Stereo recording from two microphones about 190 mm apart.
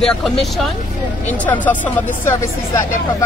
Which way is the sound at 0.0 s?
Centre (ahead or behind).